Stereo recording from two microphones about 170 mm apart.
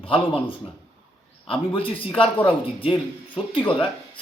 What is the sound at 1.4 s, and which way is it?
Speech, 30° left (ahead or behind).